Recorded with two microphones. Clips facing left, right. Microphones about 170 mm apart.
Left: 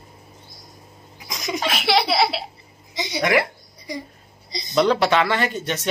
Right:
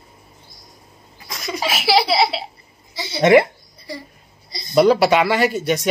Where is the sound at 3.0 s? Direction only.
20° left (ahead or behind).